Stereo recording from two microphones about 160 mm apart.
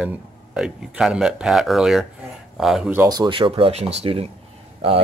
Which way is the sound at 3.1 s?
30° right (ahead or behind).